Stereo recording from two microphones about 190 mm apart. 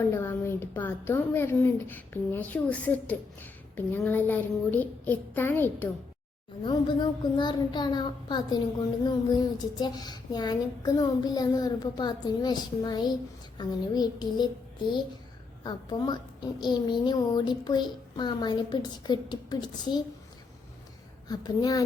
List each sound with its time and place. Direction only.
0.0 s a woman's voice: 10° left (ahead or behind)
6.6 s a child's voice: 25° left (ahead or behind)
15.6 s a child's voice: 20° left (ahead or behind)
21.2 s a child's voice: 20° left (ahead or behind)